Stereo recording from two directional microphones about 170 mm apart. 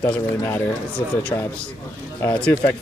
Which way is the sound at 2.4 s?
5° left (ahead or behind).